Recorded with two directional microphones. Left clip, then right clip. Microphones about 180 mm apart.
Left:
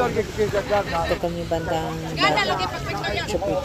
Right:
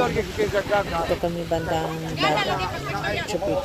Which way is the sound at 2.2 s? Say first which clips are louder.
Left 2 dB; 15° right (ahead or behind).